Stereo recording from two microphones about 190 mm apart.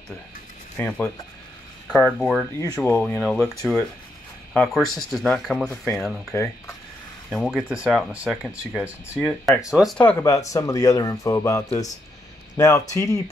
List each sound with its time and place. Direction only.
0.7 s speech: 5° left (ahead or behind)
2.5 s speech: 15° left (ahead or behind)
3.0 s speech: centre (ahead or behind)
4.6 s speech: centre (ahead or behind)
6.3 s speech: 15° left (ahead or behind)
7.2 s speech: centre (ahead or behind)
9.9 s speech: 10° left (ahead or behind)